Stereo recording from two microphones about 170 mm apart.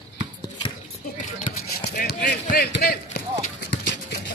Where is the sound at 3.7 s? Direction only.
80° left.